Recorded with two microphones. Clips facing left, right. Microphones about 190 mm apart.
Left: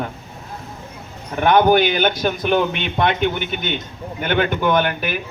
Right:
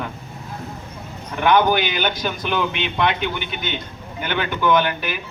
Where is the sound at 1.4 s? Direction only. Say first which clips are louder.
Left 3 dB; 50° left (ahead or behind).